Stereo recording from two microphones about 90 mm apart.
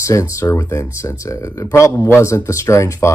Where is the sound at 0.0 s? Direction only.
35° left (ahead or behind).